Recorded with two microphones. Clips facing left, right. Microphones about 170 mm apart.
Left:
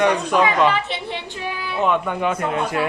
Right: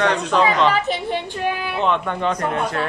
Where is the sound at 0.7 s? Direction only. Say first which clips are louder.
Right 3 dB; 45° right (ahead or behind).